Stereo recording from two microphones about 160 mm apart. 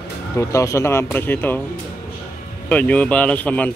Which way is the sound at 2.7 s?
10° left (ahead or behind).